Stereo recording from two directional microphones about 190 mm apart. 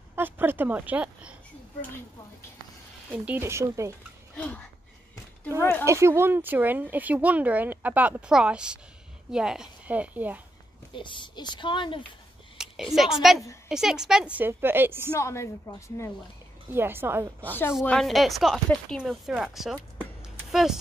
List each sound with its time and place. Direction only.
0.1 s a woman's voice: 10° right (ahead or behind)
3.3 s speech: 10° right (ahead or behind)
4.4 s a woman's voice: 5° left (ahead or behind)
5.9 s speech: 15° right (ahead or behind)
10.9 s speech: 25° left (ahead or behind)
12.5 s a woman's voice: centre (ahead or behind)
15.1 s a woman's voice: 15° left (ahead or behind)
16.7 s speech: 10° right (ahead or behind)
17.7 s speech: centre (ahead or behind)